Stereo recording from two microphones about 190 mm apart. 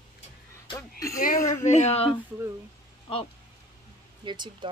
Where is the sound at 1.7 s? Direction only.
35° left (ahead or behind).